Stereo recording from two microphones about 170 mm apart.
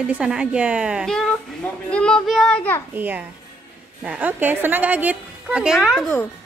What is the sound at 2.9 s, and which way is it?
A woman's voice, 10° right (ahead or behind).